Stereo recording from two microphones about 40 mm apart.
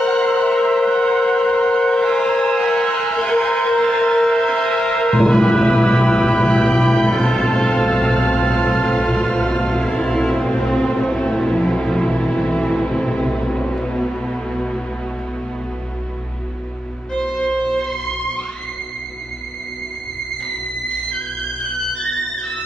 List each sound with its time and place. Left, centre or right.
0.4 s music: centre
1.9 s shofar: centre
2.8 s a sound: centre
3.5 s music: centre
17.1 s music: centre